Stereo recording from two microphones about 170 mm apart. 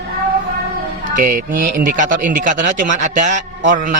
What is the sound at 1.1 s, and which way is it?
A man's voice, 55° right (ahead or behind).